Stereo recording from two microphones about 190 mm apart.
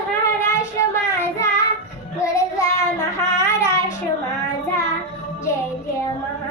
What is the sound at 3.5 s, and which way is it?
Child singing, 15° left (ahead or behind).